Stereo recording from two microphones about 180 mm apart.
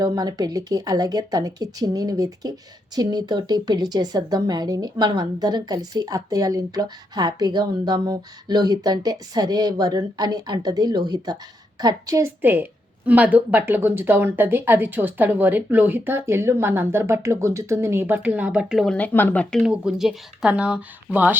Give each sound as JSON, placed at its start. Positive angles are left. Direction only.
{"t": 0.0, "sound": "a woman's voice", "side_deg": -20}